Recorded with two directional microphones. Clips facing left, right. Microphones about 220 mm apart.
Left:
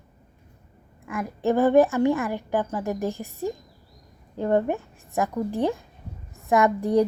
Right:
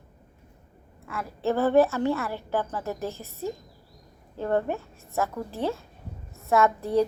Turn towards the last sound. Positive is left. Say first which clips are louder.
# left 2 dB
turn(degrees=15)  # may be behind; listen again after turning